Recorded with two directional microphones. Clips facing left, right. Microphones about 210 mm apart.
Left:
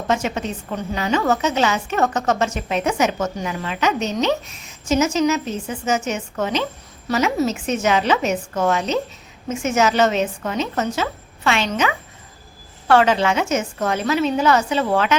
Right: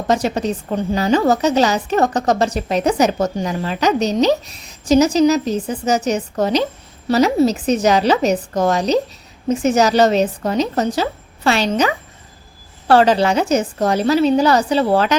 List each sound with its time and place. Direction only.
0.1 s a woman's voice: 35° right (ahead or behind)